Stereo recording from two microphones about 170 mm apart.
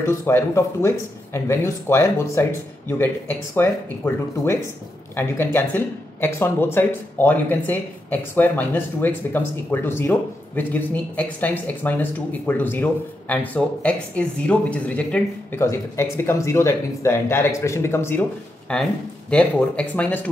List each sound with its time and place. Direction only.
0.0 s speech: 15° left (ahead or behind)